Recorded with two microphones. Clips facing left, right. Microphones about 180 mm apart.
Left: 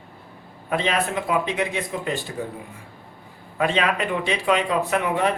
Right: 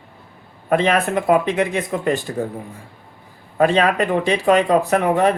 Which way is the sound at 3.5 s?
40° right (ahead or behind).